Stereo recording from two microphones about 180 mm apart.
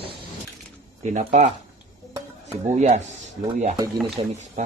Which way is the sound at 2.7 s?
40° right (ahead or behind).